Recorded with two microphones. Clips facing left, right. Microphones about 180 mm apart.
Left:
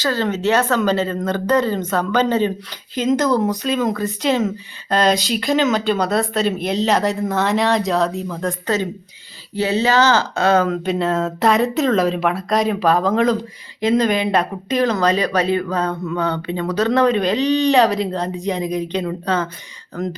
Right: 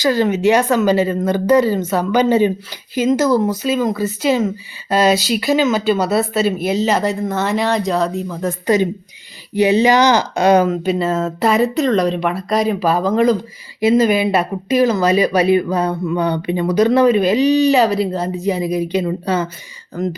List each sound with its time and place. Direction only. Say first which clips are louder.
0.0 s speech: right 5 dB; 15° right (ahead or behind)
10.7 s speech: right 2 dB; centre (ahead or behind)